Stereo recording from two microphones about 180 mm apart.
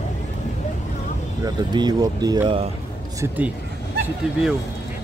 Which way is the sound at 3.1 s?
10° right (ahead or behind).